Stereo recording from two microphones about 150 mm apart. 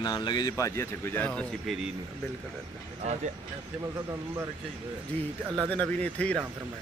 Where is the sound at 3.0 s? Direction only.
50° right (ahead or behind).